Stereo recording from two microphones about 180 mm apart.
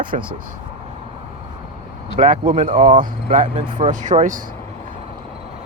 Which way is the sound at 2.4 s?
35° right (ahead or behind).